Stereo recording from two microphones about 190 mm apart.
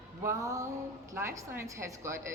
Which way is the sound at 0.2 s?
15° right (ahead or behind).